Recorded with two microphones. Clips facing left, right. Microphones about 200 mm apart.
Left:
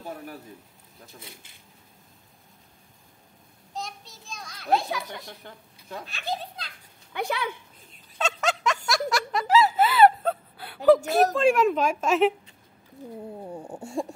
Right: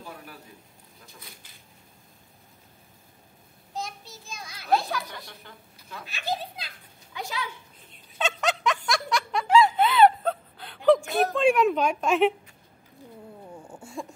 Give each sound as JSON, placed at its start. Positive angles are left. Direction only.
{"t": 0.1, "sound": "a sound", "side_deg": 40}
{"t": 3.7, "sound": "a sound", "side_deg": 0}
{"t": 4.7, "sound": "a child's voice", "side_deg": 20}
{"t": 6.0, "sound": "a child's voice", "side_deg": 0}
{"t": 7.1, "sound": "speech", "side_deg": 60}
{"t": 7.9, "sound": "snicker", "side_deg": 0}
{"t": 11.3, "sound": "a woman's voice", "side_deg": 0}
{"t": 13.6, "sound": "speech", "side_deg": 40}